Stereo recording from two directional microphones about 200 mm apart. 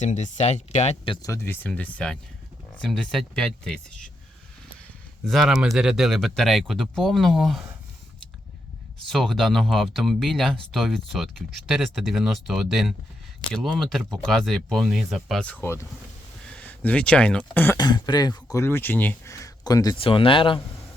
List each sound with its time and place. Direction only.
0.0 s speech: 35° left (ahead or behind); by 4.1 s centre (ahead or behind)
5.2 s speech: centre (ahead or behind)
9.0 s speech: centre (ahead or behind)
15.6 s speech: 15° left (ahead or behind)
17.7 s speech: 20° left (ahead or behind)